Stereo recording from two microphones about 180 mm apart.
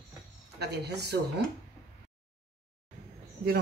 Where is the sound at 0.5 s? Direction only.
65° right (ahead or behind).